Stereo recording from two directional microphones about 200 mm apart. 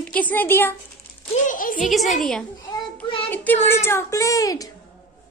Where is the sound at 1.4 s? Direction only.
40° left (ahead or behind).